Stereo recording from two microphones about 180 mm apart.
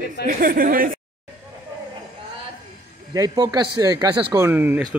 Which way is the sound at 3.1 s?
20° right (ahead or behind).